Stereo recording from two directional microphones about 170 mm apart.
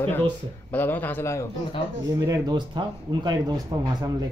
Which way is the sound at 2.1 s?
20° right (ahead or behind).